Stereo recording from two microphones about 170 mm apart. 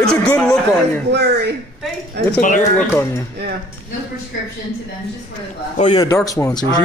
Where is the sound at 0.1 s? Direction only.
5° left (ahead or behind).